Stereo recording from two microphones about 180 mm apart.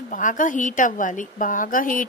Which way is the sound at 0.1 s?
45° left (ahead or behind).